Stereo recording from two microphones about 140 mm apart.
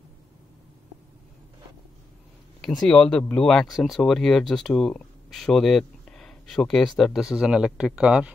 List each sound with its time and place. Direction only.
2.6 s speech: centre (ahead or behind)